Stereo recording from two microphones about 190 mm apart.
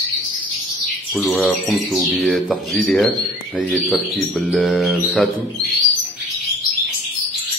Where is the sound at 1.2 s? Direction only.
Centre (ahead or behind).